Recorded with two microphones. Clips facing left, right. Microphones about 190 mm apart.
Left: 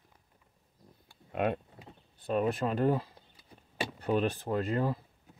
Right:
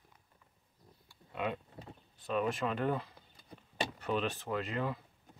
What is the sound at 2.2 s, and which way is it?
Speech, 40° left (ahead or behind).